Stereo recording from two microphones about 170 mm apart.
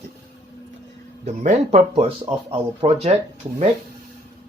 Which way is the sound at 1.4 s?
40° right (ahead or behind).